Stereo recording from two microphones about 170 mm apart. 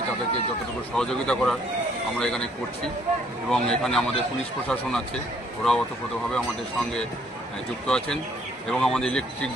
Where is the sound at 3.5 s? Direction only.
5° left (ahead or behind).